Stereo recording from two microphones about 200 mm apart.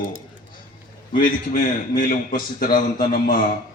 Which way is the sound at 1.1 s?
40° left (ahead or behind).